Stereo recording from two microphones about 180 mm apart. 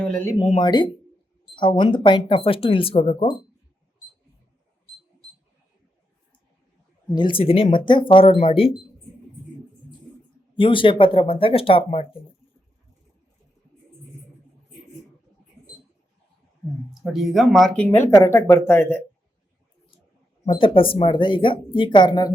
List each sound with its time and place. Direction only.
0.0 s speech: 10° left (ahead or behind)
0.3 s speech: 30° left (ahead or behind)
7.1 s speech: 25° left (ahead or behind)
10.5 s speech: 30° left (ahead or behind)
16.9 s speech: centre (ahead or behind)
17.9 s speech: 15° left (ahead or behind)
20.5 s speech: 30° left (ahead or behind)